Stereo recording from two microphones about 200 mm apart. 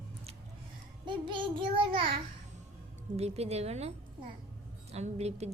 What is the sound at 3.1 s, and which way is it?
A woman's voice, 30° right (ahead or behind).